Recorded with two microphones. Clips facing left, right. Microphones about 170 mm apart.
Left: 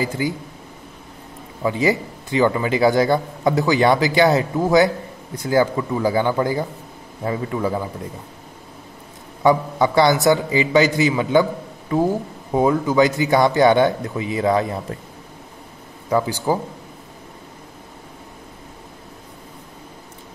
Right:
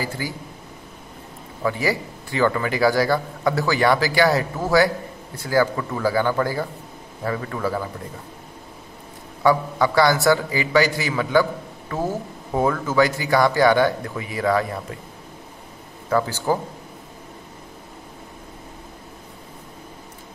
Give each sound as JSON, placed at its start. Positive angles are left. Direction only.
{"t": 0.2, "sound": "a man's voice", "side_deg": 20}
{"t": 1.6, "sound": "a man's voice", "side_deg": 20}
{"t": 9.4, "sound": "a man's voice", "side_deg": 20}
{"t": 16.1, "sound": "a man's voice", "side_deg": 15}